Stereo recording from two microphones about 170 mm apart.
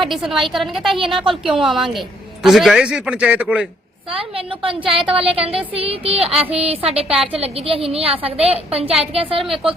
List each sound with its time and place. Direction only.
0.0 s a man's voice: centre (ahead or behind)
4.1 s a woman's voice: 30° right (ahead or behind)